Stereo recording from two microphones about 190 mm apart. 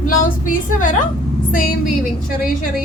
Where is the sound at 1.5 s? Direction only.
45° left (ahead or behind).